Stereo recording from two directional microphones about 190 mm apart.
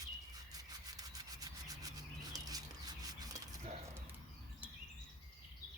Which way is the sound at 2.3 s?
20° right (ahead or behind).